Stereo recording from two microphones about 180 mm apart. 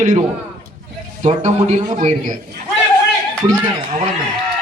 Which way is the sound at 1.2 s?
40° right (ahead or behind).